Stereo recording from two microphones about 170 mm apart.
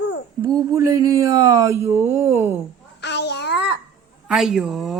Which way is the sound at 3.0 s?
90° left.